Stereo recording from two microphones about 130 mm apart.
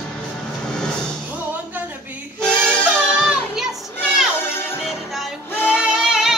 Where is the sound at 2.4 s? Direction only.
5° left (ahead or behind).